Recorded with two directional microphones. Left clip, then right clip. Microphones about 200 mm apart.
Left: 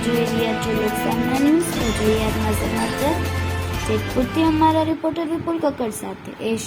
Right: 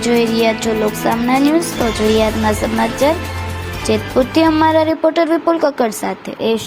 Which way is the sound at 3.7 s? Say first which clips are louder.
Right 8 dB; centre (ahead or behind).